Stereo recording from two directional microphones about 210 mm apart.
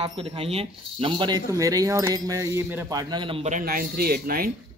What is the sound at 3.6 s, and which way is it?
Speech, 45° right (ahead or behind).